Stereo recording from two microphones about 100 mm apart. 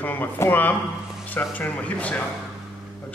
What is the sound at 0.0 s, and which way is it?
A man's voice, 20° left (ahead or behind).